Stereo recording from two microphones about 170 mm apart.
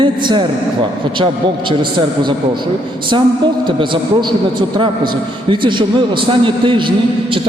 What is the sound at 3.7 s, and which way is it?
Speech, 30° right (ahead or behind).